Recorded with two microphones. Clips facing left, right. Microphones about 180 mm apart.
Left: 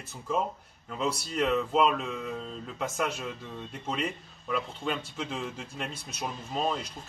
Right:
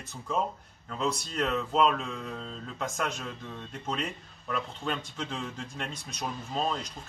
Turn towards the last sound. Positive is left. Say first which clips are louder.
# left 1 dB
turn(degrees=5)  # may be behind; listen again after turning